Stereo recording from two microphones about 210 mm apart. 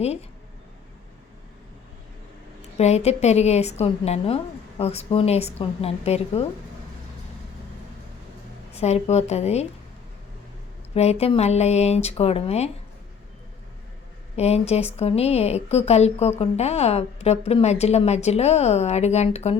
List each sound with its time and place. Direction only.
2.6 s a woman's voice: 30° left (ahead or behind)
8.7 s a woman's voice: 30° left (ahead or behind)
10.9 s a woman's voice: 30° left (ahead or behind)
14.3 s a woman's voice: 30° left (ahead or behind)